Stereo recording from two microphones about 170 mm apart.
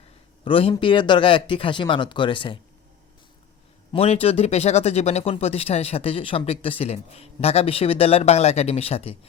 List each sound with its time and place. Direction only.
0.4 s speech: 30° left (ahead or behind)
3.9 s speech: 35° left (ahead or behind)